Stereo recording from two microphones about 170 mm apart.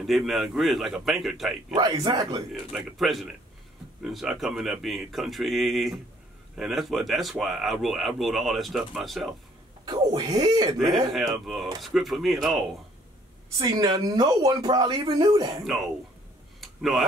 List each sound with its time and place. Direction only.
0.0 s speech: centre (ahead or behind)
1.8 s speech: 20° right (ahead or behind)
2.7 s speech: centre (ahead or behind)
9.8 s speech: 25° right (ahead or behind)
10.8 s speech: centre (ahead or behind)
13.6 s speech: 25° right (ahead or behind)
15.6 s speech: centre (ahead or behind)
16.6 s a sound: centre (ahead or behind)